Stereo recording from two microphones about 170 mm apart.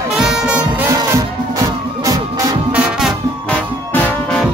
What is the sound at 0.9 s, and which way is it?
Music, 20° right (ahead or behind).